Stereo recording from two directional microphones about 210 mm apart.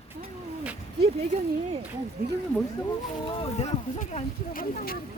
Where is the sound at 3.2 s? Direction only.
30° left (ahead or behind).